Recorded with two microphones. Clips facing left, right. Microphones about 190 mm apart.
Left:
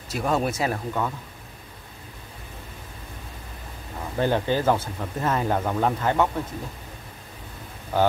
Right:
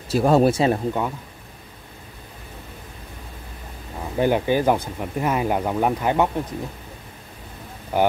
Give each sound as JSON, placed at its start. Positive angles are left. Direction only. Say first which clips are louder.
{"t": 0.1, "sound": "speech", "louder": "right 8 dB", "side_deg": -35}
{"t": 4.2, "sound": "speech", "louder": "right 3 dB", "side_deg": -15}
{"t": 7.9, "sound": "speech", "louder": "right 2 dB", "side_deg": -15}